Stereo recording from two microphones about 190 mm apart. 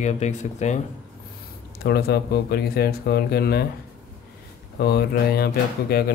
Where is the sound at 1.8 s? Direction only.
55° left (ahead or behind).